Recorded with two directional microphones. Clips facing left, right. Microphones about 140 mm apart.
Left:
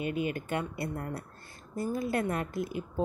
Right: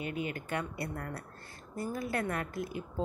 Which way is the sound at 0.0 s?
25° left (ahead or behind).